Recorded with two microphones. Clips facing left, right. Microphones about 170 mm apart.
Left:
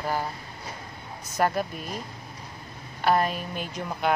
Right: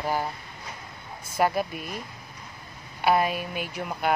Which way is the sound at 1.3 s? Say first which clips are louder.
Right 1 dB; 10° right (ahead or behind).